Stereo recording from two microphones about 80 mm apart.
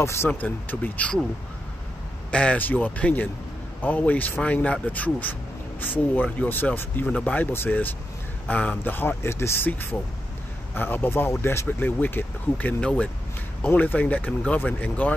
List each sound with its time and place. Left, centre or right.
0.0 s speech: left
0.3 s speech: left
2.3 s speech: centre
7.5 s speech: left
10.7 s speech: left